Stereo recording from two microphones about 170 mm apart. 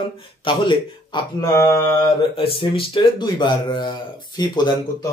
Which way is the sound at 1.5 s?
15° left (ahead or behind).